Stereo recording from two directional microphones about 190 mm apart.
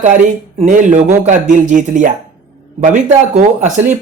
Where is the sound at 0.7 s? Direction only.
40° right (ahead or behind).